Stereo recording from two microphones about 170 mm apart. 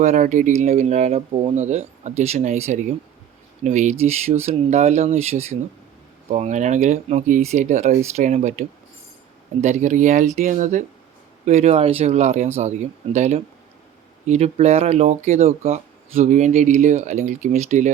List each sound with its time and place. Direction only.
0.0 s speech: 45° right (ahead or behind)